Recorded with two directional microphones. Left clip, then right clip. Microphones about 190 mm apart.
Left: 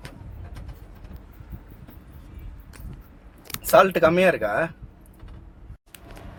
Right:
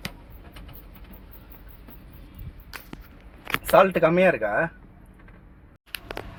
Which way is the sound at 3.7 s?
Centre (ahead or behind).